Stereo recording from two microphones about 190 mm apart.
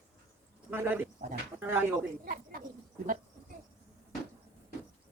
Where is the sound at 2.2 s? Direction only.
50° right (ahead or behind).